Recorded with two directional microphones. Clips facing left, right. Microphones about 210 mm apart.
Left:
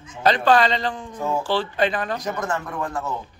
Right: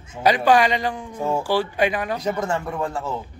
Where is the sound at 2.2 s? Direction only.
25° right (ahead or behind).